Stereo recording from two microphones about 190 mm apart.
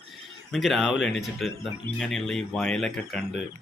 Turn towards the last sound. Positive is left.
turn(degrees=0)  # may be behind; listen again after turning